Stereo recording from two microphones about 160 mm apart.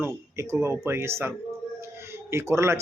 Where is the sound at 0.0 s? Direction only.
15° right (ahead or behind).